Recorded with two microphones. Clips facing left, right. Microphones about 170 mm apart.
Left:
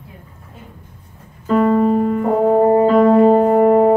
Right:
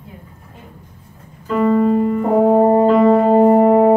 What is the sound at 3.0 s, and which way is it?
Music, 30° right (ahead or behind).